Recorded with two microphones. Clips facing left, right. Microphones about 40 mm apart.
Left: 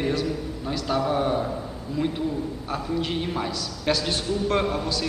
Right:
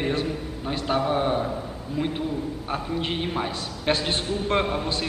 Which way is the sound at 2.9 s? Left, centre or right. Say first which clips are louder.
Even; right.